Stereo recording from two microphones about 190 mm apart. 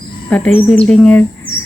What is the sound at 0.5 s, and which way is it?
Speech, 5° left (ahead or behind).